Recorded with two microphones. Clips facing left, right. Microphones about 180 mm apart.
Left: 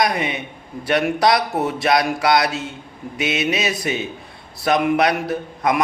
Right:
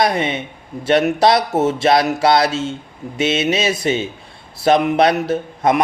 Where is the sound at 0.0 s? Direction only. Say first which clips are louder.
Right 3 dB; 25° right (ahead or behind).